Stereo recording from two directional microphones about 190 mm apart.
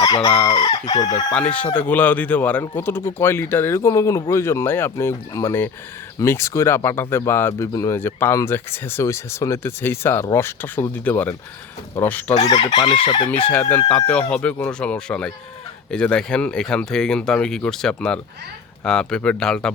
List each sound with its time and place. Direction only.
0.4 s chicken: 20° left (ahead or behind)
1.3 s speech: 5° left (ahead or behind)
12.4 s chicken: 30° left (ahead or behind)
13.5 s speech: 5° left (ahead or behind)